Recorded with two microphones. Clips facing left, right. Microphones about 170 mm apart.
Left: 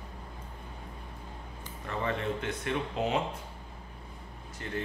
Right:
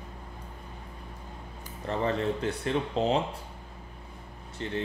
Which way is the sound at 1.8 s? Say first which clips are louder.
Right 4 dB; 35° right (ahead or behind).